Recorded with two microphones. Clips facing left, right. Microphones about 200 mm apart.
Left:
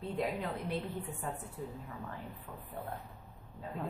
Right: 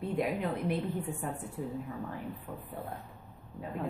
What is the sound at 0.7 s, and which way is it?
Speech, 15° right (ahead or behind).